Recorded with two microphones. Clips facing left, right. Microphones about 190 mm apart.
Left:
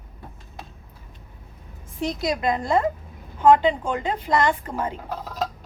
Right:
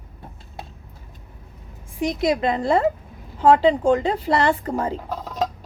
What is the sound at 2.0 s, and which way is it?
A woman's voice, 20° right (ahead or behind).